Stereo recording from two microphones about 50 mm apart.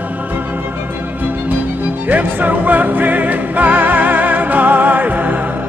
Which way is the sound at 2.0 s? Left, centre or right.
Right.